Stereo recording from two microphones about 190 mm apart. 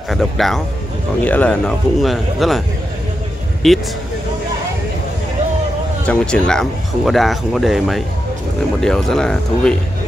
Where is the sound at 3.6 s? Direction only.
Centre (ahead or behind).